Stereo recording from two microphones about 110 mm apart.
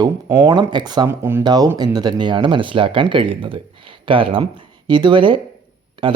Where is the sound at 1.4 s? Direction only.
40° right (ahead or behind).